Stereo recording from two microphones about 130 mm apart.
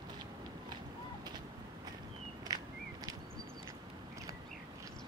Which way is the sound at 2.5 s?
30° right (ahead or behind).